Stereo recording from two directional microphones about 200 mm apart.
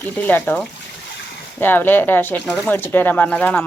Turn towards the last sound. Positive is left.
turn(degrees=5)  # may be behind; listen again after turning